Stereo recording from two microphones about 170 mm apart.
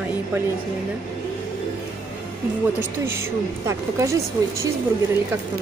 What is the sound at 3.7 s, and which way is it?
Speech, 20° right (ahead or behind).